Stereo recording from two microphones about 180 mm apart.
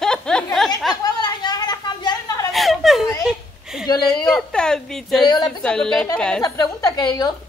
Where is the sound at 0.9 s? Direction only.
20° left (ahead or behind).